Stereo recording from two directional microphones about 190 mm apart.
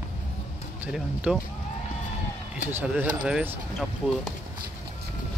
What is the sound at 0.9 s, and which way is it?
Speech, 5° right (ahead or behind).